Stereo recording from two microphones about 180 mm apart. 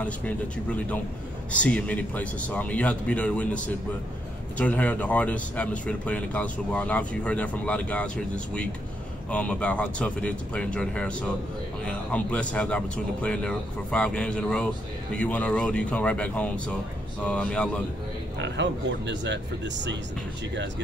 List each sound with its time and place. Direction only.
0.0 s speech: 10° left (ahead or behind)
9.3 s speech: 5° left (ahead or behind)
18.4 s speech: 80° right